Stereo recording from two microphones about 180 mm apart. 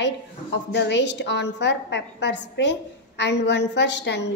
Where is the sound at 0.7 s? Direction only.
75° left (ahead or behind).